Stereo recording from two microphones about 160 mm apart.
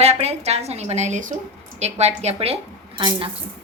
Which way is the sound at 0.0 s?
40° right (ahead or behind).